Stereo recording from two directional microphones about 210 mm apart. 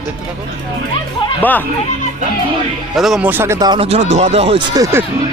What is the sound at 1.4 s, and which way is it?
Speech, 10° left (ahead or behind).